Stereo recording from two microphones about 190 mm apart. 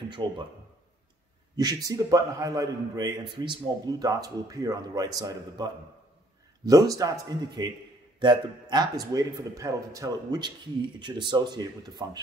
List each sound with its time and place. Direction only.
0.1 s a man's voice: 25° right (ahead or behind)
1.6 s a man's voice: 20° right (ahead or behind)